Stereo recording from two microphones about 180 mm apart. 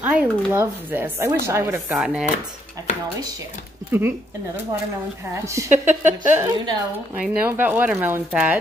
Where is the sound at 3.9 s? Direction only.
10° right (ahead or behind).